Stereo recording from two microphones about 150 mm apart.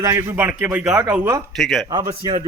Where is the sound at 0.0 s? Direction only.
15° right (ahead or behind).